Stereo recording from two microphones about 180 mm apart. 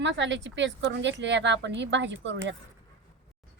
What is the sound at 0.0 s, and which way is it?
A woman's voice, 85° right.